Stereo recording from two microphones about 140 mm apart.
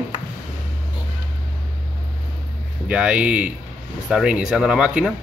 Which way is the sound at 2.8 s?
10° right (ahead or behind).